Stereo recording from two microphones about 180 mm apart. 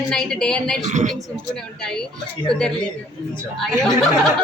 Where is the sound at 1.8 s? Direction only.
5° left (ahead or behind).